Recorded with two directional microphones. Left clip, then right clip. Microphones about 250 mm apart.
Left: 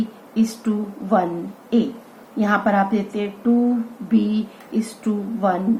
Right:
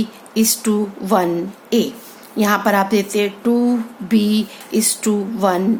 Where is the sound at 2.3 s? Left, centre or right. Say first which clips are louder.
Right 3 dB; right.